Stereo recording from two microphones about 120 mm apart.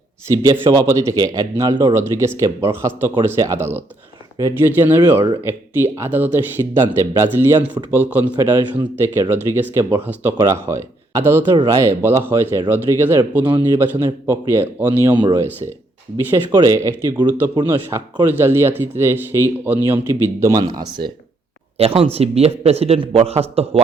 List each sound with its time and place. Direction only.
0.6 s a man's voice: 35° right (ahead or behind); by 15.3 s 15° right (ahead or behind)
15.6 s a man's voice: 55° right (ahead or behind)
16.1 s speech: 20° right (ahead or behind); by 17.7 s 35° right (ahead or behind)
17.7 s speech: 20° right (ahead or behind); by 21.1 s 35° right (ahead or behind)
21.8 s a man's voice: 55° right (ahead or behind)